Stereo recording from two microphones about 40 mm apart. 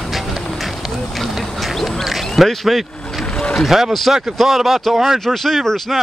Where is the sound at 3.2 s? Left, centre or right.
Centre.